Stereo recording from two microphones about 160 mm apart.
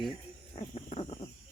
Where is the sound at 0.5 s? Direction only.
40° left (ahead or behind).